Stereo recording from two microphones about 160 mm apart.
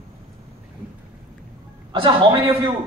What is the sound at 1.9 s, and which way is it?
Speech, 35° right (ahead or behind).